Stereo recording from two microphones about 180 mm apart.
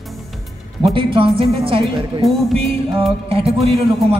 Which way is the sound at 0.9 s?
30° right (ahead or behind).